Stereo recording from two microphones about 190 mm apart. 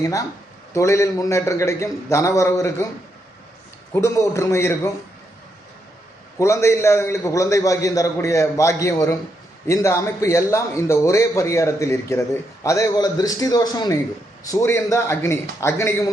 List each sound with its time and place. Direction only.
0.0 s a man's voice: 15° left (ahead or behind)
3.9 s a man's voice: 15° left (ahead or behind)
6.4 s a man's voice: 15° left (ahead or behind)